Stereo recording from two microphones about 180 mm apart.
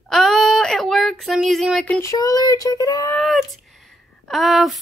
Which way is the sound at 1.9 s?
20° left (ahead or behind).